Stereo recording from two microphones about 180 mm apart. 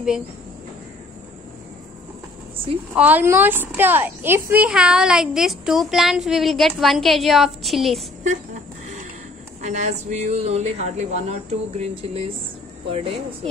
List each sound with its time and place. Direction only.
2.9 s a woman's voice: 10° right (ahead or behind)
9.6 s speech: 40° right (ahead or behind)